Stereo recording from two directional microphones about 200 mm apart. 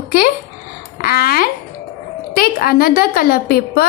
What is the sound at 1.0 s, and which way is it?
Babbling, 45° left (ahead or behind).